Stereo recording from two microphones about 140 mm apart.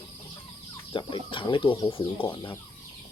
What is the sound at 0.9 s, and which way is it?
Speech, 35° left (ahead or behind).